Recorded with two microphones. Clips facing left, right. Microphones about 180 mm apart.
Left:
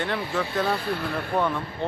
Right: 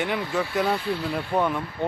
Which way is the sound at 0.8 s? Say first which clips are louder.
Right 1 dB; 55° left (ahead or behind).